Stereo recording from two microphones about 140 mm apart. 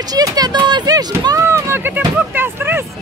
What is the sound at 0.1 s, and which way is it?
Speech, 30° right (ahead or behind).